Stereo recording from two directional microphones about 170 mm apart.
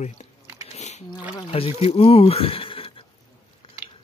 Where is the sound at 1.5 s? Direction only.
35° left (ahead or behind).